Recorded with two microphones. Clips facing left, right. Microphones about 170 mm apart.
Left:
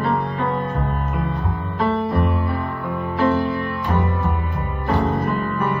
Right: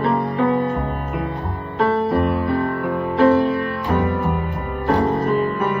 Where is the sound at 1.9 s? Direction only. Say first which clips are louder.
Right 3 dB; 60° right (ahead or behind).